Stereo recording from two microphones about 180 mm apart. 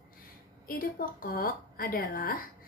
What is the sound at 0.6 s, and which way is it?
A woman's voice, 55° left (ahead or behind).